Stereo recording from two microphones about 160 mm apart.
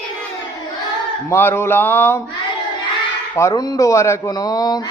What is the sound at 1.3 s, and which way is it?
Speech, 15° left (ahead or behind).